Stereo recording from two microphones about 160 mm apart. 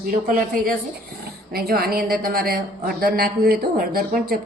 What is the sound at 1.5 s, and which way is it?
A woman's voice, 70° right (ahead or behind).